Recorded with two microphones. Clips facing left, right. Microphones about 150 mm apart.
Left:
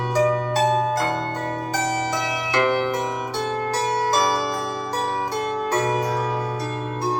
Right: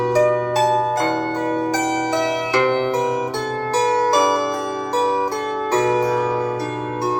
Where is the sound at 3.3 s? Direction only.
40° right (ahead or behind).